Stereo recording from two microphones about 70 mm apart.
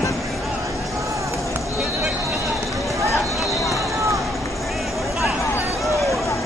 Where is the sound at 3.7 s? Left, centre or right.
Right.